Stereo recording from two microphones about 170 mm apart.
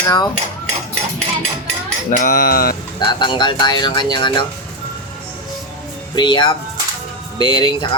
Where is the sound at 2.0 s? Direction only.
50° left (ahead or behind).